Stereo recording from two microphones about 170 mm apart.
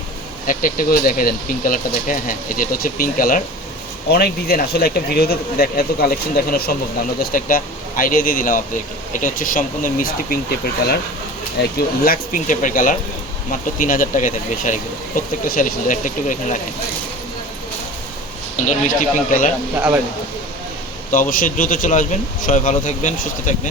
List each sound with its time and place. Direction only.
0.4 s speech: 55° left (ahead or behind)
4.1 s speech: 65° left (ahead or behind)
11.6 s speech: 75° left (ahead or behind)
12.0 s speech: 55° left (ahead or behind)
18.7 s speech: 50° left (ahead or behind)
21.1 s speech: 50° left (ahead or behind)